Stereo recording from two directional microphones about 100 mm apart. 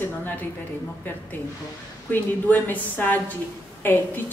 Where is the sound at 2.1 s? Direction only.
20° left (ahead or behind).